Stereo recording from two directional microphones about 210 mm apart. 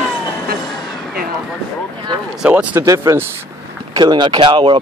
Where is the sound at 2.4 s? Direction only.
5° right (ahead or behind).